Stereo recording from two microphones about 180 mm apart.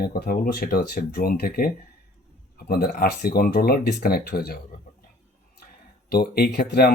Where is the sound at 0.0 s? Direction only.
60° left (ahead or behind).